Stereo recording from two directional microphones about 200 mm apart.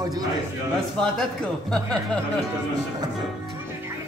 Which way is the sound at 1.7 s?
5° left (ahead or behind).